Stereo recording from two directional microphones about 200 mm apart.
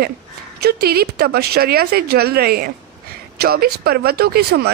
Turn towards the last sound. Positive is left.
turn(degrees=-50)  # may be behind; listen again after turning